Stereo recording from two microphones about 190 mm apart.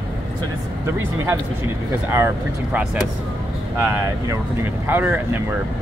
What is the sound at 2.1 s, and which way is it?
Speech, 10° right (ahead or behind).